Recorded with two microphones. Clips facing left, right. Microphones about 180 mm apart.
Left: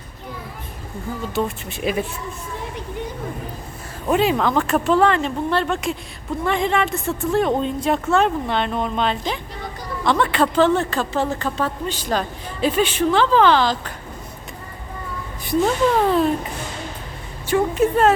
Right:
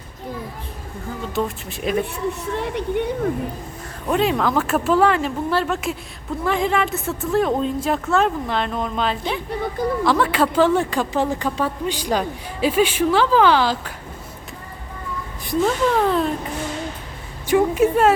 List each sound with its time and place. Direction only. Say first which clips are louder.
1.4 s speech: even; centre (ahead or behind)
2.6 s a woman's voice: right 9 dB; 70° right (ahead or behind)
4.1 s a woman's voice: left 1 dB; centre (ahead or behind)
15.4 s speech: left 1 dB; 5° left (ahead or behind)
17.5 s a woman's voice: right 2 dB; 10° right (ahead or behind)